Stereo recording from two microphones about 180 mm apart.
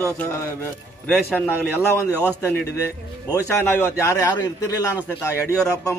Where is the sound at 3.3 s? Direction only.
15° left (ahead or behind).